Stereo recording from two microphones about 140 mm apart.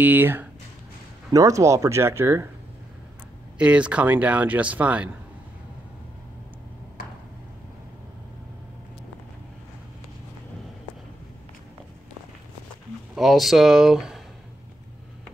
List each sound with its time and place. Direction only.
0.0 s speech: 15° right (ahead or behind)
3.5 s speech: 10° right (ahead or behind)
13.1 s speech: centre (ahead or behind)